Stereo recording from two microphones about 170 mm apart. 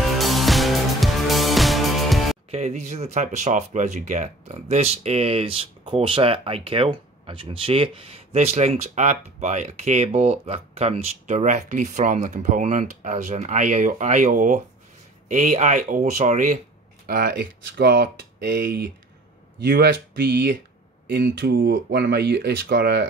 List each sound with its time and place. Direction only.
0.2 s music: centre (ahead or behind)
2.5 s speech: 40° right (ahead or behind)
17.0 s speech: 60° right (ahead or behind)